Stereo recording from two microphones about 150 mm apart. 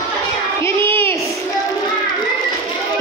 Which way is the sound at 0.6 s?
15° left (ahead or behind).